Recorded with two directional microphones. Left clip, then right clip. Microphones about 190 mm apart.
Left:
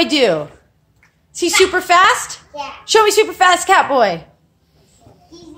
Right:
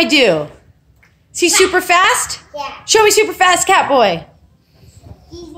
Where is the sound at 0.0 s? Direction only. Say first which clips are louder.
Right 3 dB; 10° right (ahead or behind).